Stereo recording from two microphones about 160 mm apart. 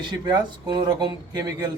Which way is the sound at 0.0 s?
30° right (ahead or behind).